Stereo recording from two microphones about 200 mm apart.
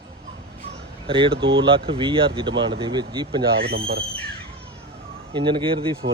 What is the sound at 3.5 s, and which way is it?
Speech, 55° right (ahead or behind).